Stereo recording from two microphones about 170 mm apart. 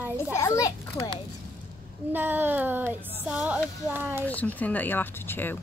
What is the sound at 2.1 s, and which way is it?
Speech, 10° right (ahead or behind).